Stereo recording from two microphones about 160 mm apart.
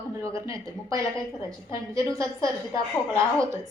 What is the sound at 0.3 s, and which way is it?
Speech, 20° right (ahead or behind).